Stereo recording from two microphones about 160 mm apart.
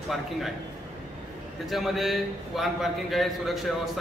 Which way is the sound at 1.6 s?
Centre (ahead or behind).